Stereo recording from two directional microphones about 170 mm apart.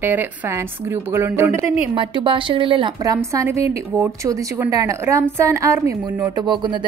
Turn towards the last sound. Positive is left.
turn(degrees=-25)  # may be behind; listen again after turning